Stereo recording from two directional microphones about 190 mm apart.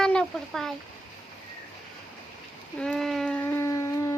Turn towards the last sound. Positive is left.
turn(degrees=15)  # may be behind; listen again after turning